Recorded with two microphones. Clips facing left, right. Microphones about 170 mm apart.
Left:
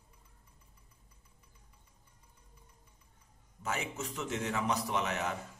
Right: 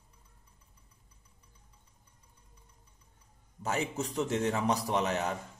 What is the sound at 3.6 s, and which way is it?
Speech, 35° right (ahead or behind).